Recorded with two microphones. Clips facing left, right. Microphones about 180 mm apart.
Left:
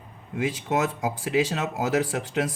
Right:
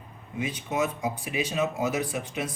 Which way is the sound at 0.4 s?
85° left.